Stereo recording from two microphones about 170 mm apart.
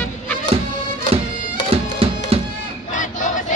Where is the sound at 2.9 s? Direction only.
50° left (ahead or behind).